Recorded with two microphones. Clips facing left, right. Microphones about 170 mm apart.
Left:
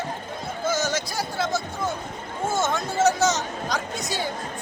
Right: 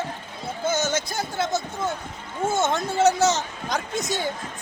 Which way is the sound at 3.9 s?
50° right (ahead or behind).